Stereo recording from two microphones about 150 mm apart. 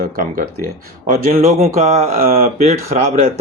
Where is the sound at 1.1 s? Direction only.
45° right (ahead or behind).